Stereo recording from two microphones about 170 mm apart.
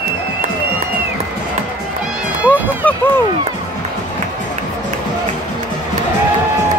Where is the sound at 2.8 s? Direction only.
10° left (ahead or behind).